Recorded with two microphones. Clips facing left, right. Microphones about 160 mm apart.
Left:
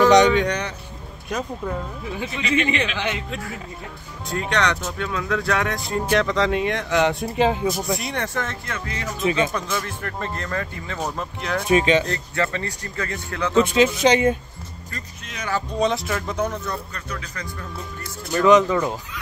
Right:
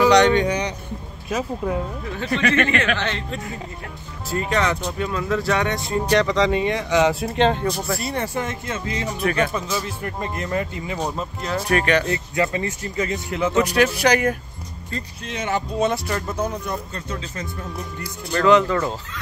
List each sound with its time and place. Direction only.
0.3 s speech: centre (ahead or behind)
2.4 s a man's voice: 55° right (ahead or behind)
3.0 s speech: 10° left (ahead or behind)
4.3 s speech: 5° right (ahead or behind)
8.1 s speech: 10° right (ahead or behind)
9.2 s speech: 20° left (ahead or behind)
9.5 s speech: 5° right (ahead or behind)
11.6 s speech: 20° left (ahead or behind)
12.1 s speech: 15° right (ahead or behind)
13.6 s speech: 20° left (ahead or behind)
14.9 s speech: 30° right (ahead or behind)
15.8 s speech: centre (ahead or behind); by 17.6 s 25° right (ahead or behind)
18.0 s speech: 15° left (ahead or behind)